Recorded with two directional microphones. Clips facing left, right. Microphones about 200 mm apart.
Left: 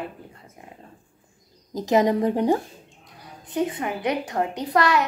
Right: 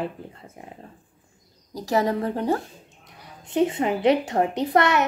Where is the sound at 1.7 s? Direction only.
20° left (ahead or behind).